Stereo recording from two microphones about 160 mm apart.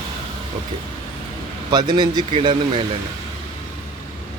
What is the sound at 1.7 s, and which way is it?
Speech, 30° right (ahead or behind).